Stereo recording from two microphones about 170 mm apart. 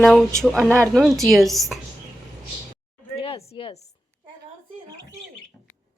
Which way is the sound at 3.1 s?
35° left (ahead or behind).